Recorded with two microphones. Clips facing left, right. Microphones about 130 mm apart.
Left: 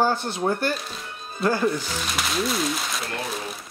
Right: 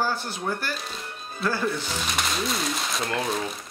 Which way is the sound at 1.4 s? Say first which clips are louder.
Left 4 dB; 20° left (ahead or behind).